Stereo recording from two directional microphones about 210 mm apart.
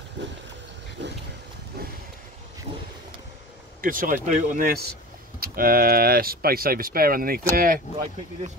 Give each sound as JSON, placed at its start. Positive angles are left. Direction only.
{"t": 0.2, "sound": "a sound", "side_deg": -60}
{"t": 1.7, "sound": "vehicle", "side_deg": -50}
{"t": 3.8, "sound": "speech", "side_deg": -40}